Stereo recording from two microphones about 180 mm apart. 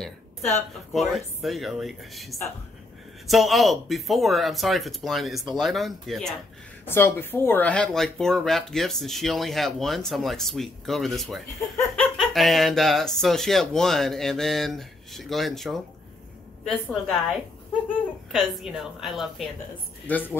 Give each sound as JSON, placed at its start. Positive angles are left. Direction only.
{"t": 0.9, "sound": "speech", "side_deg": 0}
{"t": 6.9, "sound": "speech", "side_deg": 10}
{"t": 20.1, "sound": "speech", "side_deg": 10}